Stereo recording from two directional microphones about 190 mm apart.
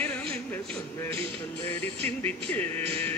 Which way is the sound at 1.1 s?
30° right (ahead or behind).